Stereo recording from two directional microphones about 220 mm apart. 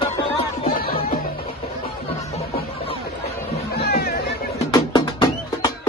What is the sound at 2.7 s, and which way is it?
Chatter, 25° left (ahead or behind).